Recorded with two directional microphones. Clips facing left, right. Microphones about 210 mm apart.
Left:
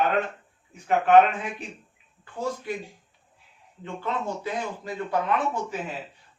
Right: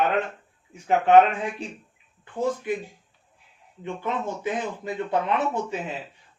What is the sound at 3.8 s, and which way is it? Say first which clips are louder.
Speech: right 1 dB; 15° right (ahead or behind).